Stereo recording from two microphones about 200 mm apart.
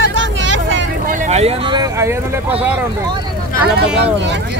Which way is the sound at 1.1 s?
35° right (ahead or behind).